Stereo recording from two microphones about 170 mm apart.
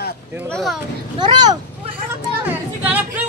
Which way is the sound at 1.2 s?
25° right (ahead or behind).